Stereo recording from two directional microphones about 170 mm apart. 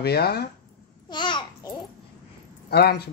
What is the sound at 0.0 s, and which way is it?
Speech, 70° left (ahead or behind).